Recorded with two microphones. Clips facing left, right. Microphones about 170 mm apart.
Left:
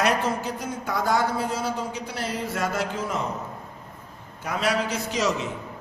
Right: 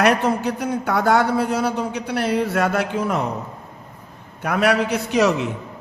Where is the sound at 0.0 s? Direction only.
65° right (ahead or behind).